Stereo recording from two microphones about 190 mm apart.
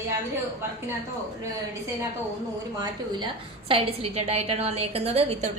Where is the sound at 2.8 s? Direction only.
25° right (ahead or behind).